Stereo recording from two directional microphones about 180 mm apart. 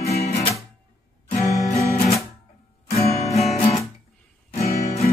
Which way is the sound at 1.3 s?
40° left (ahead or behind).